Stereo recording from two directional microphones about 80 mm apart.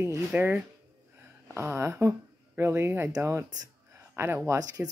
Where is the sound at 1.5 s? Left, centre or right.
Right.